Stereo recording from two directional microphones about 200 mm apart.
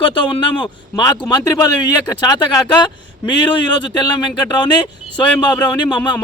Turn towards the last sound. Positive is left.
turn(degrees=20)  # may be behind; listen again after turning